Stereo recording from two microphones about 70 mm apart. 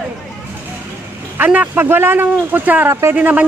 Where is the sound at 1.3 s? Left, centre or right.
Right.